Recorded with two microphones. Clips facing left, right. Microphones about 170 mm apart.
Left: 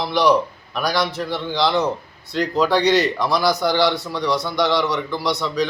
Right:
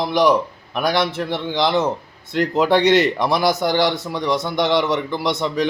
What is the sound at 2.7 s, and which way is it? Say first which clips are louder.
Speech: right 3 dB; 55° right (ahead or behind).